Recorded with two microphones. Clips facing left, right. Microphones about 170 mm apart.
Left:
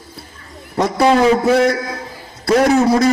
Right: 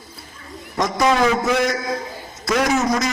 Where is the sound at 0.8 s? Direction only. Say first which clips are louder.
Left 5 dB; 30° left (ahead or behind).